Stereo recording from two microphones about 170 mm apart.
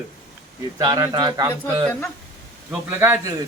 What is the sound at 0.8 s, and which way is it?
Speech, 20° right (ahead or behind).